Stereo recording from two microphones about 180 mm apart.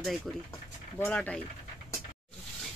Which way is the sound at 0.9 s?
10° left (ahead or behind).